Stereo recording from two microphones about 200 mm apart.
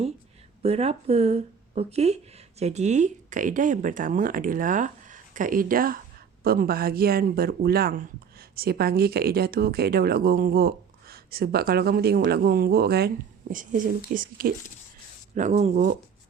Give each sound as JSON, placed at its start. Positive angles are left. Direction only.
{"t": 0.6, "sound": "speech", "side_deg": -30}
{"t": 13.5, "sound": "speech", "side_deg": -40}